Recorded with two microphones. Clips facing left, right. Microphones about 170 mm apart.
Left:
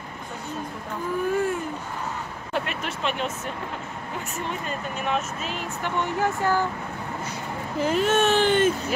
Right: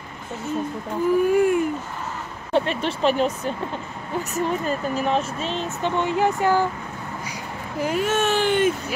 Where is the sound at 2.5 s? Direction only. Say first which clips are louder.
Right 8 dB; 30° right (ahead or behind).